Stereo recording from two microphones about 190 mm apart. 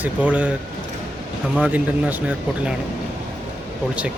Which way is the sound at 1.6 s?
10° right (ahead or behind).